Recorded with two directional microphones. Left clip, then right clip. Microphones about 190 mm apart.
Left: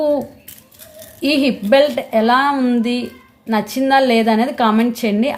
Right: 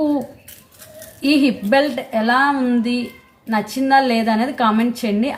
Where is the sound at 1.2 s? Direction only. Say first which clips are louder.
Even; 30° left (ahead or behind).